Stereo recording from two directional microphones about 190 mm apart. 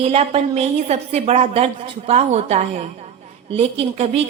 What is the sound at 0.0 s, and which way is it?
Speech, 30° right (ahead or behind).